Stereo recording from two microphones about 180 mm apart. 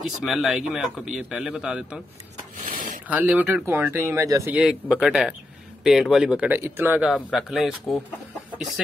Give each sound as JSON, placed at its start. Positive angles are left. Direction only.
{"t": 0.2, "sound": "a man's voice", "side_deg": 0}
{"t": 2.7, "sound": "rub", "side_deg": -45}
{"t": 3.1, "sound": "speech", "side_deg": -5}
{"t": 4.6, "sound": "a man's voice", "side_deg": -5}